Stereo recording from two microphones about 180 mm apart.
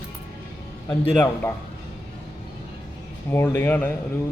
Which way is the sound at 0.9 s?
10° left (ahead or behind).